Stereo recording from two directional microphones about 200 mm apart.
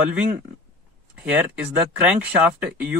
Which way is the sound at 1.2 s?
10° right (ahead or behind).